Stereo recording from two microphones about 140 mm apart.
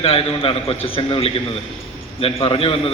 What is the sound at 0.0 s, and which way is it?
A man's voice, 45° left (ahead or behind).